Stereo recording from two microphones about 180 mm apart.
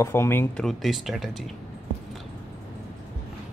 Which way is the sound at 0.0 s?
15° left (ahead or behind).